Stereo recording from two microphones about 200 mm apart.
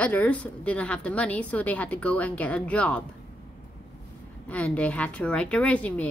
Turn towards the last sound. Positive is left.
turn(degrees=5)  # may be behind; listen again after turning